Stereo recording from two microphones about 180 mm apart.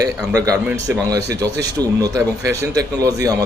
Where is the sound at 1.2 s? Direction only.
70° right (ahead or behind).